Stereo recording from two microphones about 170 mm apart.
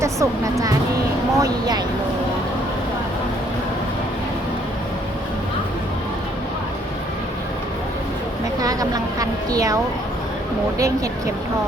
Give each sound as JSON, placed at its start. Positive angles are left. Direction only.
{"t": 0.0, "sound": "speech", "side_deg": -20}
{"t": 8.6, "sound": "a woman's voice", "side_deg": -20}
{"t": 10.8, "sound": "speech", "side_deg": -20}